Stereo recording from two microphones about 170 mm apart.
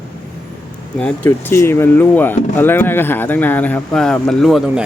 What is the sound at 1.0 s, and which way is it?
Speech, 10° left (ahead or behind).